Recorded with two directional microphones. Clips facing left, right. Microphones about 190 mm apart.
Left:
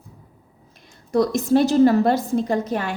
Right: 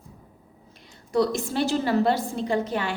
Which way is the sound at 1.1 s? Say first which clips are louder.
Left 5 dB; 45° left (ahead or behind).